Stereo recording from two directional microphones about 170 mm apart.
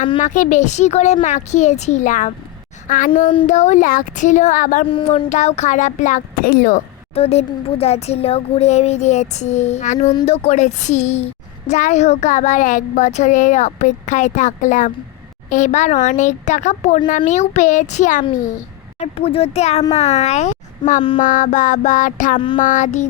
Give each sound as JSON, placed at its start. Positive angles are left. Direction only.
{"t": 0.2, "sound": "a woman's voice", "side_deg": 45}
{"t": 4.9, "sound": "speech", "side_deg": 30}
{"t": 7.2, "sound": "a sound", "side_deg": 35}
{"t": 11.7, "sound": "speech", "side_deg": 45}
{"t": 18.9, "sound": "a sound", "side_deg": 35}
{"t": 21.2, "sound": "speech", "side_deg": 50}